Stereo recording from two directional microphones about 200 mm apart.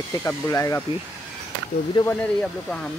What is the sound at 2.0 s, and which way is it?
Speech, 20° left (ahead or behind).